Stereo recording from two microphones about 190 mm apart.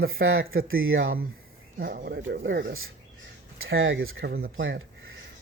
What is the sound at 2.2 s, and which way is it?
Speech, 70° right (ahead or behind).